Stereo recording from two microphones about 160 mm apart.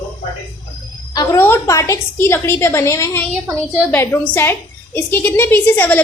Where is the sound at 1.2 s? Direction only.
15° left (ahead or behind).